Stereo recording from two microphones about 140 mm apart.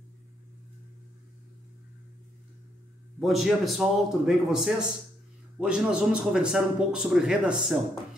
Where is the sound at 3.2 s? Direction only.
Centre (ahead or behind).